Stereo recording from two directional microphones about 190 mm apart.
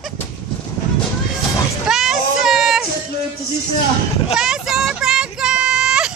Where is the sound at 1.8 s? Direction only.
Centre (ahead or behind).